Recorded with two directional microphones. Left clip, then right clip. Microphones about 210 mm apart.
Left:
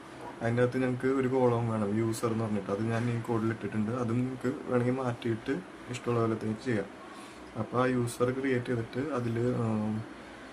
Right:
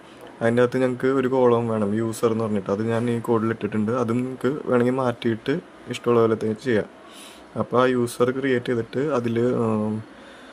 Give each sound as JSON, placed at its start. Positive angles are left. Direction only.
{"t": 0.4, "sound": "speech", "side_deg": -45}